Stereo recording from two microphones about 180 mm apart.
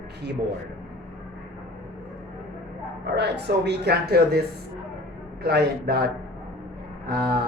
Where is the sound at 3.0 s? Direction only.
65° right (ahead or behind).